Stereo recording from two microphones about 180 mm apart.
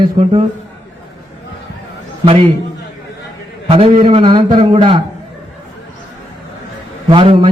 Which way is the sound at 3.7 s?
30° right (ahead or behind).